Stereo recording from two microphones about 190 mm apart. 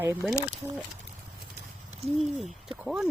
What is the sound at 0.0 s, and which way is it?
Speech, 10° right (ahead or behind).